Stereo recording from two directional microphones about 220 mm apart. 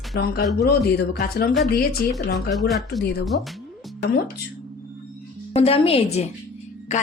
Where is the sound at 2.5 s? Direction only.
Centre (ahead or behind).